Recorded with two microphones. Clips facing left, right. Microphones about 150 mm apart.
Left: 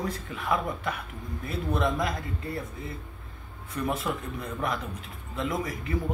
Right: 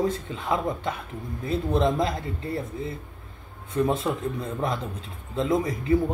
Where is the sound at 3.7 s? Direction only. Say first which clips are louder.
Right 6 dB; 25° right (ahead or behind).